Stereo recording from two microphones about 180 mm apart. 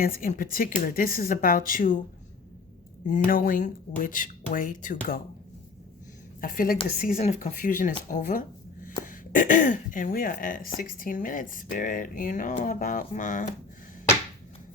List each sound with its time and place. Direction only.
0.0 s speech: 50° left (ahead or behind)
3.1 s speech: 50° left (ahead or behind)
6.4 s speech: 50° left (ahead or behind)